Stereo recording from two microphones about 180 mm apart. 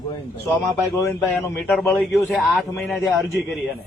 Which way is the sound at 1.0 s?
10° left (ahead or behind).